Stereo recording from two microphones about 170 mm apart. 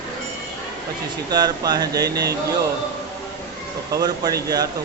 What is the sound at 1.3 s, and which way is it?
Speech, 25° right (ahead or behind).